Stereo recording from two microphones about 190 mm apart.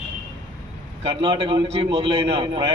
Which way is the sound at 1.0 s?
25° right (ahead or behind).